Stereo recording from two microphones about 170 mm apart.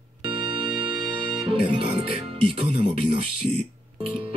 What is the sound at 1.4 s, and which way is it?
Speech, 35° right (ahead or behind).